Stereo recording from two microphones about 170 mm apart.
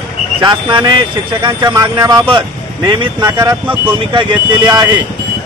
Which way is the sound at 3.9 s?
30° right (ahead or behind).